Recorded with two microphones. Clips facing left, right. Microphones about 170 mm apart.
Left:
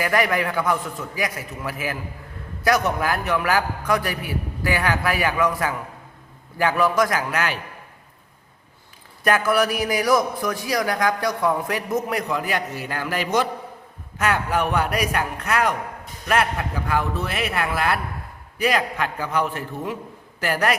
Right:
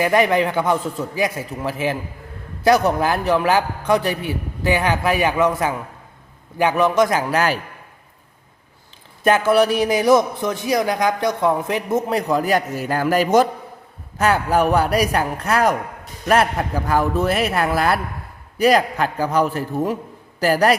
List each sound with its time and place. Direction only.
0.0 s a man's voice: 25° right (ahead or behind)
9.2 s a man's voice: 25° right (ahead or behind)